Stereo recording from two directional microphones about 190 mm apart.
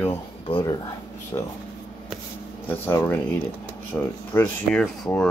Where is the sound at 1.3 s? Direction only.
20° left (ahead or behind).